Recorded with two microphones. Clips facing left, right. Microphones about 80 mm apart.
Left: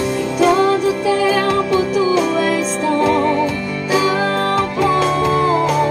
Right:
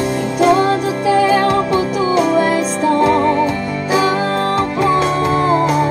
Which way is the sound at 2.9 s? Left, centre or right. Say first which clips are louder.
Right 2 dB; right.